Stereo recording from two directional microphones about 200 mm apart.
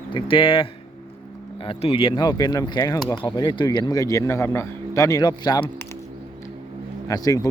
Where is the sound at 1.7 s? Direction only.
25° left (ahead or behind).